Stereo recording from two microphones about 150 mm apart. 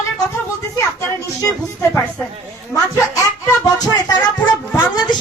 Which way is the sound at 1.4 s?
15° left (ahead or behind).